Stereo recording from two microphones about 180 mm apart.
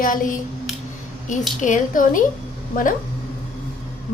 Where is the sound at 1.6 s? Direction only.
45° left (ahead or behind).